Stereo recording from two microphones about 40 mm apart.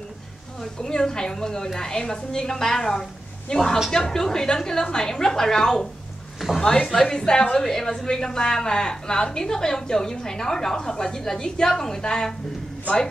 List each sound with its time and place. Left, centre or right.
0.7 s a woman's voice: centre